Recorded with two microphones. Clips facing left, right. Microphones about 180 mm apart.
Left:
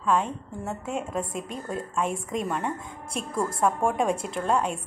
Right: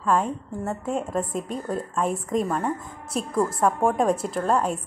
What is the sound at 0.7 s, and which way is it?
A woman's voice, 5° left (ahead or behind).